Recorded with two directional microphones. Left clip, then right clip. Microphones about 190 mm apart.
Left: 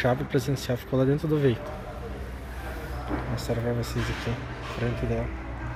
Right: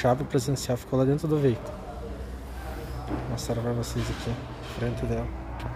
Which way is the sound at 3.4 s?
Centre (ahead or behind).